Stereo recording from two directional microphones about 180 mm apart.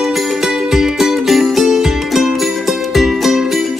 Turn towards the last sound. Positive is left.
turn(degrees=0)  # may be behind; listen again after turning